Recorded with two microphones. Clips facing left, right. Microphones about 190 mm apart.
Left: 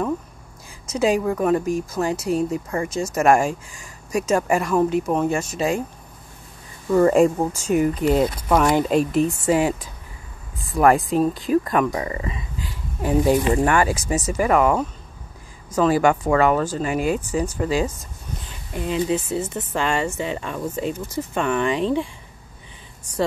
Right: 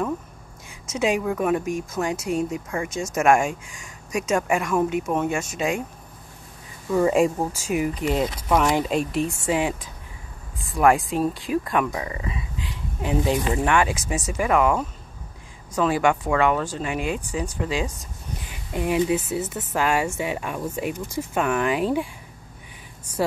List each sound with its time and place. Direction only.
0.8 s speech: centre (ahead or behind)
3.7 s a sound: centre (ahead or behind)
4.3 s speech: centre (ahead or behind)
5.6 s speech: 35° left (ahead or behind)
6.9 s speech: 5° right (ahead or behind)
13.5 s speech: 5° right (ahead or behind)
15.7 s speech: centre (ahead or behind)
16.9 s speech: 40° left (ahead or behind)
17.5 s speech: centre (ahead or behind)
18.5 s speech: 15° right (ahead or behind)